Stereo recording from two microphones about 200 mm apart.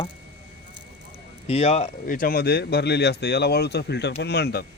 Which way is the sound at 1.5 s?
30° left (ahead or behind).